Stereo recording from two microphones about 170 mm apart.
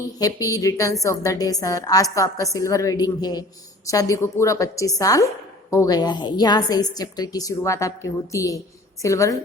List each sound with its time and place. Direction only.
0.2 s a woman's voice: 20° left (ahead or behind)